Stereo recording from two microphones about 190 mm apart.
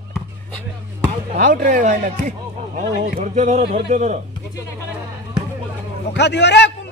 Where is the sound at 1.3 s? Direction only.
45° right (ahead or behind).